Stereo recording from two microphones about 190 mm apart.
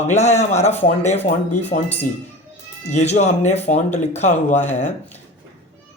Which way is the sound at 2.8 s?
35° left (ahead or behind).